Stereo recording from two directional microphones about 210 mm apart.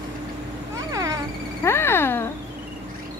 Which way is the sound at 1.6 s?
10° left (ahead or behind).